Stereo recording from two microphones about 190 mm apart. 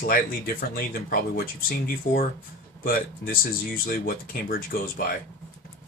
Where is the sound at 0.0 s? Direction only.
50° left (ahead or behind).